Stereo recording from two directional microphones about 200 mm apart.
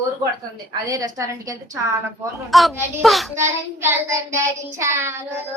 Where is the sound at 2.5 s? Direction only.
Centre (ahead or behind).